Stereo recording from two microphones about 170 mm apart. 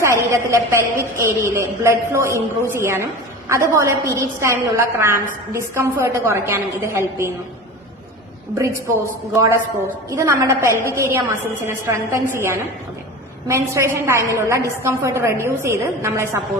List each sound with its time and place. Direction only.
0.0 s a woman's voice: 15° right (ahead or behind)
10.2 s a woman's voice: 15° right (ahead or behind)